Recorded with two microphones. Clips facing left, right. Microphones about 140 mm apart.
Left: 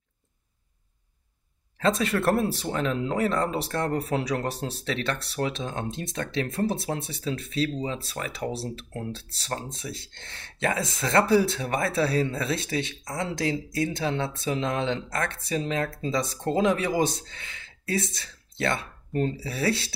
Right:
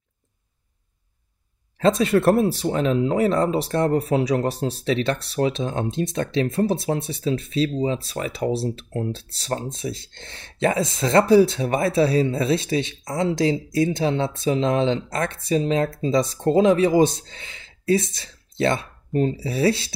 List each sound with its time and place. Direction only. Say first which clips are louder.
1.8 s speech: right 6 dB; 20° right (ahead or behind)